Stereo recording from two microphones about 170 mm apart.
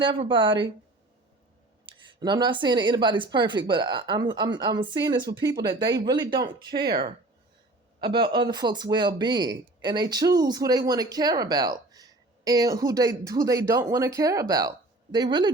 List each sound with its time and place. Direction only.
0.0 s speech: 30° right (ahead or behind)
2.2 s speech: 25° right (ahead or behind)
6.8 s speech: 65° right (ahead or behind)
8.1 s speech: 25° right (ahead or behind)